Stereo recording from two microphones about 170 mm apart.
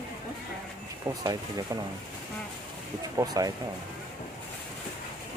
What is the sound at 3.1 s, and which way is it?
Speech, 20° right (ahead or behind).